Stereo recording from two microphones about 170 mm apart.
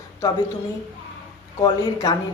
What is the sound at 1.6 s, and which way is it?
Speech, 20° left (ahead or behind).